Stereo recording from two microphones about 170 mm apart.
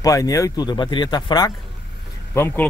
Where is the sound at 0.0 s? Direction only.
20° left (ahead or behind).